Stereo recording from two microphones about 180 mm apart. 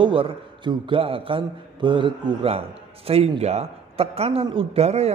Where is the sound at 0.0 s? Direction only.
30° right (ahead or behind).